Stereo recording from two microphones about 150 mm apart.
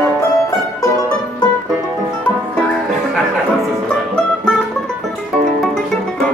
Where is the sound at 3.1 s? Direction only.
Centre (ahead or behind).